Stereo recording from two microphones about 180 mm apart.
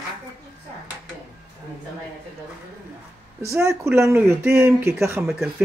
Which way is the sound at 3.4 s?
15° right (ahead or behind).